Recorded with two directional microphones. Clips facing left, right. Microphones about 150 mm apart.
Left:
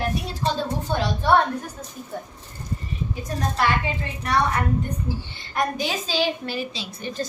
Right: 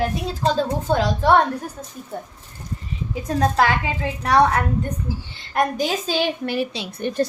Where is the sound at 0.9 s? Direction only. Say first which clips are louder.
Right 5 dB; 90° right.